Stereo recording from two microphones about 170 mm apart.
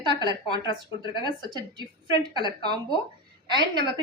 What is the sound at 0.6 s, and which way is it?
Speech, 30° left (ahead or behind).